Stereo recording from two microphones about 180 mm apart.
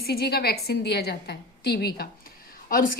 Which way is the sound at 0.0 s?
60° left (ahead or behind).